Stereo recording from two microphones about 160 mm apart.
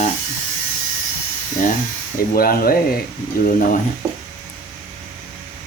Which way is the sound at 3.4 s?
55° left (ahead or behind).